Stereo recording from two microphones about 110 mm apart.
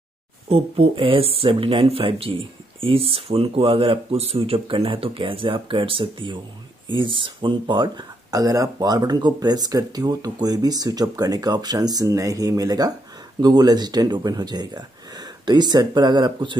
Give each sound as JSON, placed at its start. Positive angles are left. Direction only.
{"t": 0.5, "sound": "speech", "side_deg": -55}